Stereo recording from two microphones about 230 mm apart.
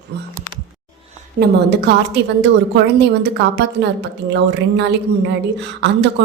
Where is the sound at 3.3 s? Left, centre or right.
Right.